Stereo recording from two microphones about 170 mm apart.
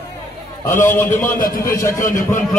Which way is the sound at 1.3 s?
55° left (ahead or behind).